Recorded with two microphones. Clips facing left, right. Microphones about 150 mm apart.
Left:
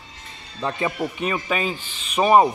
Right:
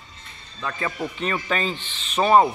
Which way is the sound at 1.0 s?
10° left (ahead or behind).